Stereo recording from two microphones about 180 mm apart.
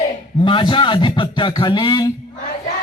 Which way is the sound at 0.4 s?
25° left (ahead or behind).